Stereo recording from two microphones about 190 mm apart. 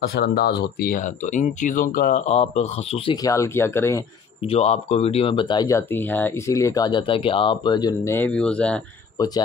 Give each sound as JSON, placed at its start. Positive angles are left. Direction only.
{"t": 0.0, "sound": "speech", "side_deg": 55}
{"t": 3.2, "sound": "speech", "side_deg": 15}
{"t": 4.5, "sound": "speech", "side_deg": 35}
{"t": 9.2, "sound": "speech", "side_deg": 20}